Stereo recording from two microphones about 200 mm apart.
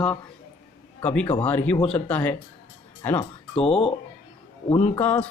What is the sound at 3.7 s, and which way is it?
Speech, 30° left (ahead or behind).